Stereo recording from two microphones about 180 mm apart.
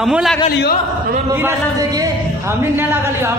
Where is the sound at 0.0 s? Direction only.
Centre (ahead or behind).